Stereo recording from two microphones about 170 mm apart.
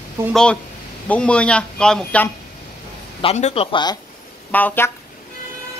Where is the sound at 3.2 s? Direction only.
35° left (ahead or behind).